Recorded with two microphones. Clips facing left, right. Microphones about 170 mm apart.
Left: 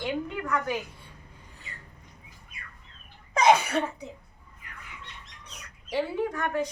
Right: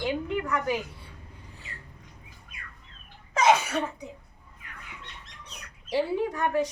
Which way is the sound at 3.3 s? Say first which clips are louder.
Left 1 dB; 5° right (ahead or behind).